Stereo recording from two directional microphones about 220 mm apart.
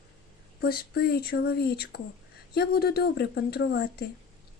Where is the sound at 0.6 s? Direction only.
45° left (ahead or behind).